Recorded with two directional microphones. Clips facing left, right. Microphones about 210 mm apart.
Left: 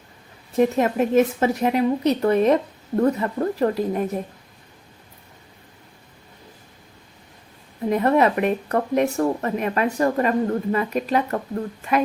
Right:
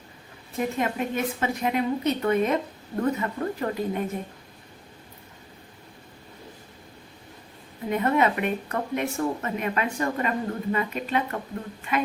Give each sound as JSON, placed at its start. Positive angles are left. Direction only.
{"t": 0.5, "sound": "speech", "side_deg": 40}
{"t": 7.9, "sound": "speech", "side_deg": 35}